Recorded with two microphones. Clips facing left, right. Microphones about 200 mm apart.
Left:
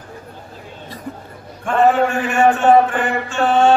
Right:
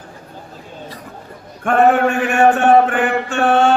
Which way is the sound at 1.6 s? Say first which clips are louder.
Right 2 dB; 60° right (ahead or behind).